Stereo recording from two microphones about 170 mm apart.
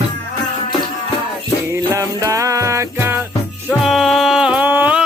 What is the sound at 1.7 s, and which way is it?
Music, 20° right (ahead or behind).